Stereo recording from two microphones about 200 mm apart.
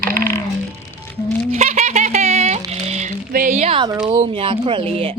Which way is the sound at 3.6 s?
25° right (ahead or behind).